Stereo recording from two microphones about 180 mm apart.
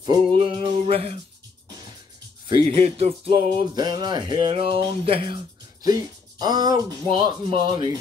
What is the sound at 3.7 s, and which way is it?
Speech, 20° right (ahead or behind).